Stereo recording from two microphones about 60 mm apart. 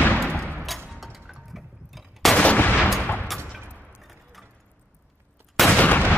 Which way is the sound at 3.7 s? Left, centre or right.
Left.